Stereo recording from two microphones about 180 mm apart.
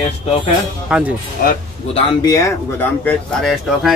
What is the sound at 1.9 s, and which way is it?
Speech, 25° left (ahead or behind).